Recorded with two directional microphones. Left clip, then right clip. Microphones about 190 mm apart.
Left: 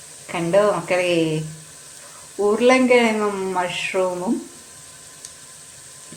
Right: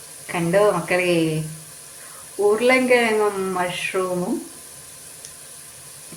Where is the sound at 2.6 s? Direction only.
15° left (ahead or behind).